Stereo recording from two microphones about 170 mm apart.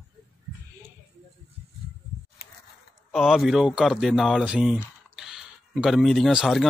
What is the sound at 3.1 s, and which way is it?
Speech, centre (ahead or behind).